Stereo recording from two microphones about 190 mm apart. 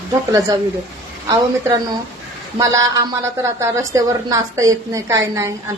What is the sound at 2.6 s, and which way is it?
A woman's voice, 15° right (ahead or behind).